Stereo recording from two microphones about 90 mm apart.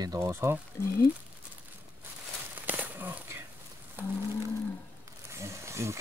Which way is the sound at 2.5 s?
20° right (ahead or behind).